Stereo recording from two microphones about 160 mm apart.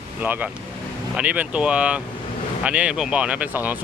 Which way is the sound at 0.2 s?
10° right (ahead or behind).